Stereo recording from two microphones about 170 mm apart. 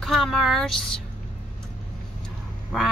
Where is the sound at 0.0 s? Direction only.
Centre (ahead or behind).